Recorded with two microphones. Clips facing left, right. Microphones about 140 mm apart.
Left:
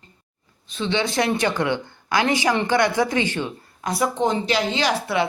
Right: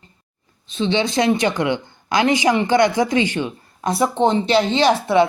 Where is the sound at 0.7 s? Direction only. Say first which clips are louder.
Right 4 dB; 20° right (ahead or behind).